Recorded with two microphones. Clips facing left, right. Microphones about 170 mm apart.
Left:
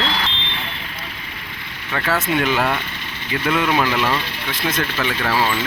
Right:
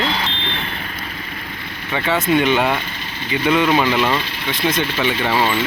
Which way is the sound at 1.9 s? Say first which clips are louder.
Right 3 dB; centre (ahead or behind).